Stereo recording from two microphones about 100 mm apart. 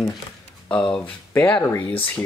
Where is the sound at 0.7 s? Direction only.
10° left (ahead or behind).